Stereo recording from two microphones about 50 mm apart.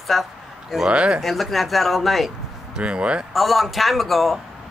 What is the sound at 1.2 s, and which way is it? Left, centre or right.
A man's voice, centre.